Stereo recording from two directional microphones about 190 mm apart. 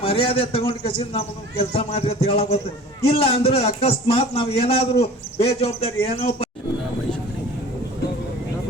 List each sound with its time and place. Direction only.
0.0 s a man's voice: 30° left (ahead or behind)